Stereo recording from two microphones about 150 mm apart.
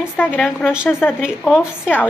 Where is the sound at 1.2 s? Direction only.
Centre (ahead or behind).